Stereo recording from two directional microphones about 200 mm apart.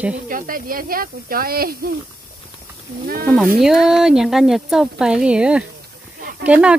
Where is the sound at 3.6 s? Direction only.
Centre (ahead or behind).